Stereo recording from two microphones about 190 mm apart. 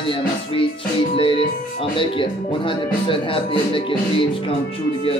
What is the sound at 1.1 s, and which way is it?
Speech, 30° left (ahead or behind).